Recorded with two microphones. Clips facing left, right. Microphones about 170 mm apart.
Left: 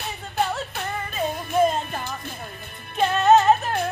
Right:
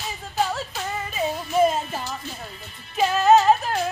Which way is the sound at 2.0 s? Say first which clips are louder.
Even; 55° left (ahead or behind).